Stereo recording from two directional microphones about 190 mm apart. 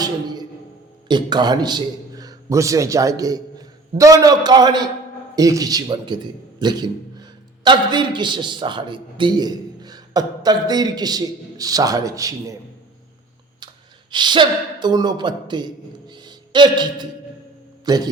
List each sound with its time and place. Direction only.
0.0 s a sound: 20° right (ahead or behind)
1.0 s a man's voice: 25° right (ahead or behind)
14.1 s a man's voice: 25° right (ahead or behind)